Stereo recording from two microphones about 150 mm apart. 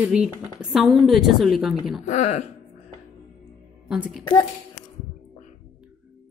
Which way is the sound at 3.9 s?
5° right (ahead or behind).